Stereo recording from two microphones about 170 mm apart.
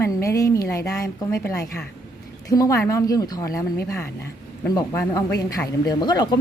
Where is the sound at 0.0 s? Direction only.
20° left (ahead or behind).